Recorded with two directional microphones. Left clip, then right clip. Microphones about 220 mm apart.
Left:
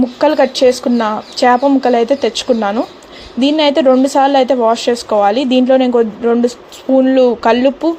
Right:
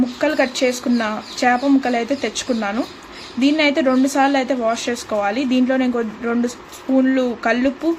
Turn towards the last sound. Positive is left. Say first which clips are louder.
# left 7 dB
turn(degrees=25)  # may be behind; listen again after turning